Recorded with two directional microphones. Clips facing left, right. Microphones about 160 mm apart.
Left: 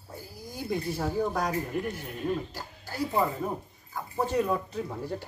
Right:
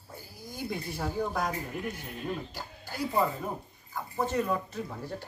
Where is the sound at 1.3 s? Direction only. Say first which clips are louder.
Left 3 dB; 5° right (ahead or behind).